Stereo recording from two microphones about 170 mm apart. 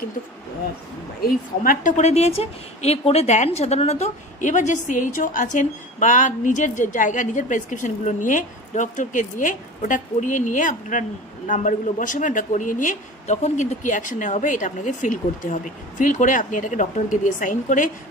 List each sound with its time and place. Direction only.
1.2 s a woman's voice: 55° left (ahead or behind)